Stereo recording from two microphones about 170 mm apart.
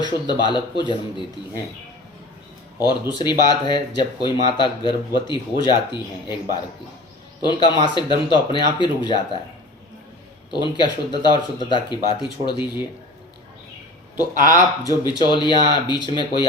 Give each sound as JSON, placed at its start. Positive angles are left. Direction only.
{"t": 0.0, "sound": "speech", "side_deg": 25}
{"t": 2.7, "sound": "speech", "side_deg": 25}
{"t": 10.5, "sound": "speech", "side_deg": 25}
{"t": 14.2, "sound": "speech", "side_deg": 20}